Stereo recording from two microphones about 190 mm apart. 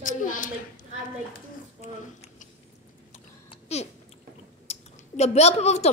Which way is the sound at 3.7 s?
35° left (ahead or behind).